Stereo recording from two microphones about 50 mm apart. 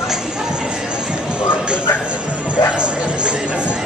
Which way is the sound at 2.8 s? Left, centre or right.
Right.